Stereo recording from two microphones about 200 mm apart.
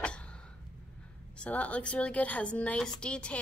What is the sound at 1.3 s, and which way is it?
A woman's voice, 5° left (ahead or behind).